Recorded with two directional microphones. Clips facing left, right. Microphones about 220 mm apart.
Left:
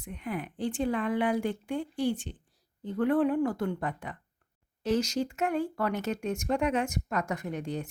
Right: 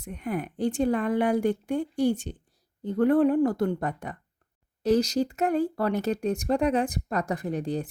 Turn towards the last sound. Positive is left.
turn(degrees=-35)  # may be behind; listen again after turning